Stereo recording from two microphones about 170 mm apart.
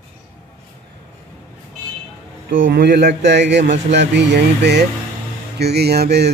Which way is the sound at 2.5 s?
60° right (ahead or behind).